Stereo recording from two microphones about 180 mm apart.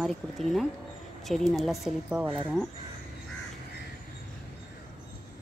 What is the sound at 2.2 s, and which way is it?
Speech, 30° right (ahead or behind).